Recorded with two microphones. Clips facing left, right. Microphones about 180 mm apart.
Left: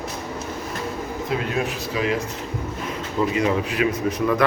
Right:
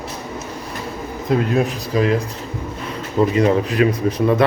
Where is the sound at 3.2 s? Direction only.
35° right (ahead or behind).